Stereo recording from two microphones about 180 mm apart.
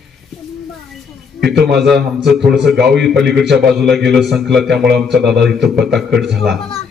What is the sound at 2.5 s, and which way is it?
A man's voice, centre (ahead or behind).